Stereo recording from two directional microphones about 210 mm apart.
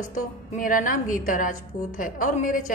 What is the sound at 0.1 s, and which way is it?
A woman's voice, 40° left (ahead or behind).